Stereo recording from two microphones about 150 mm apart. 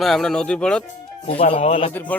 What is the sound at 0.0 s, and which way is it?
Speech, centre (ahead or behind).